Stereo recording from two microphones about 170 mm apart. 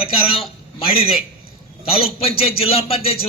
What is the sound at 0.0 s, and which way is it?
Speech, 35° left (ahead or behind).